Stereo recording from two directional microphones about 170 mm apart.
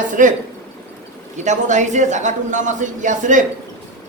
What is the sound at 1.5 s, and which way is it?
A man's voice, 45° right (ahead or behind).